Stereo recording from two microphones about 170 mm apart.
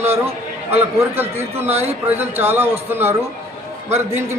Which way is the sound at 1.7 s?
40° right (ahead or behind).